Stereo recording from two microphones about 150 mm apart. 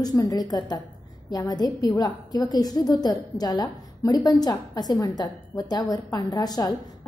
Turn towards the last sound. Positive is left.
turn(degrees=25)  # may be behind; listen again after turning